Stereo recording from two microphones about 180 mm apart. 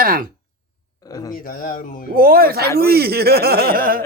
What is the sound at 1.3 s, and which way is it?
Speech, 50° left (ahead or behind).